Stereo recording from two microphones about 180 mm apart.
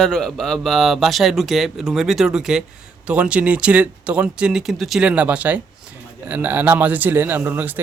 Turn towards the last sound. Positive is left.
turn(degrees=-10)  # may be behind; listen again after turning